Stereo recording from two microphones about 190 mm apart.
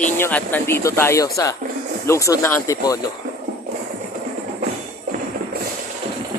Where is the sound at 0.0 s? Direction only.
10° left (ahead or behind).